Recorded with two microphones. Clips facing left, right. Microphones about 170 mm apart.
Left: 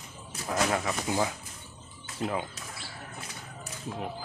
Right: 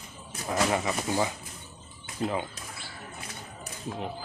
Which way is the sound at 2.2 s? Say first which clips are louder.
Right 2 dB; centre (ahead or behind).